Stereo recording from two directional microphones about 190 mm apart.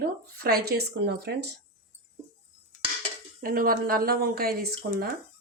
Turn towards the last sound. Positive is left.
turn(degrees=-55)  # may be behind; listen again after turning